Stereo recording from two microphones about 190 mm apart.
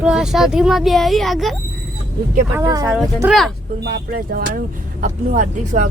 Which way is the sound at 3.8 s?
50° right (ahead or behind).